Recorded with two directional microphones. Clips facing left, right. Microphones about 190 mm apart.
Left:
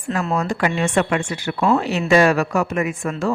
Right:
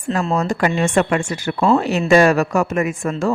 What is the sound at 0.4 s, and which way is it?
A woman's voice, 40° right (ahead or behind).